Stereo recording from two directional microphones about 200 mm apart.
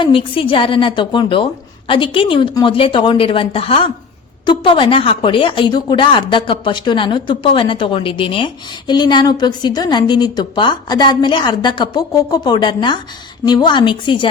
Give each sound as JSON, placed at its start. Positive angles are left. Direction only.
{"t": 0.0, "sound": "a woman's voice", "side_deg": 25}